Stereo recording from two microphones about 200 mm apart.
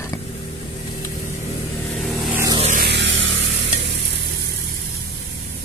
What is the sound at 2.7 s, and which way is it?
Vehicle, 55° right (ahead or behind).